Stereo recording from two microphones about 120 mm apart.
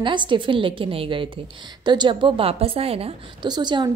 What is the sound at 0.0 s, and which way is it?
A woman's voice, 40° right (ahead or behind).